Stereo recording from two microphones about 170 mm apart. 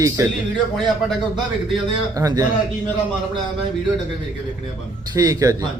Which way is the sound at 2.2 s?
20° right (ahead or behind).